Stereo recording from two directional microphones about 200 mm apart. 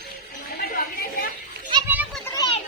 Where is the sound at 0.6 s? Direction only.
45° left (ahead or behind).